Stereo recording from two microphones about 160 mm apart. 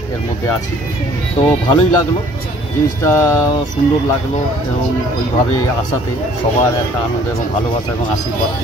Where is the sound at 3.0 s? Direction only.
20° left (ahead or behind).